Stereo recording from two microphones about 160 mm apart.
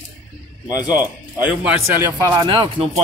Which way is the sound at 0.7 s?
25° left (ahead or behind).